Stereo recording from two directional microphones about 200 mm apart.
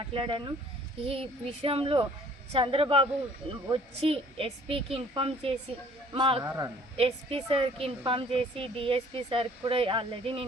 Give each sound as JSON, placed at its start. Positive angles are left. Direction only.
{"t": 0.0, "sound": "speech", "side_deg": -25}